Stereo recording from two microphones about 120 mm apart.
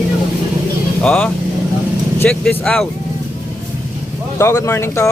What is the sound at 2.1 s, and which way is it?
Vehicle, 15° left (ahead or behind).